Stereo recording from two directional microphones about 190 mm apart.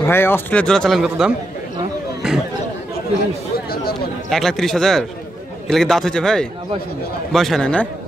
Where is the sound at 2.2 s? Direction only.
5° right (ahead or behind).